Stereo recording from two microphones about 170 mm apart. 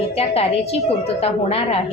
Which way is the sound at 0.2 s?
35° left (ahead or behind).